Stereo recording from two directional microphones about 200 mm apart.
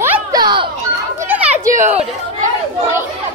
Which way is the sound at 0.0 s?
15° right (ahead or behind).